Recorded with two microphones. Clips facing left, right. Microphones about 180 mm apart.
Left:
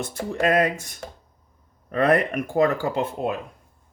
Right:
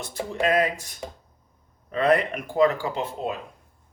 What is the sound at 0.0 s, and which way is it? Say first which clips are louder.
Speech: left 2 dB; 50° left (ahead or behind).